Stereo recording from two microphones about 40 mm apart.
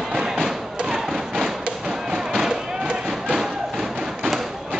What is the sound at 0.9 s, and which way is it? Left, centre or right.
Thump, centre.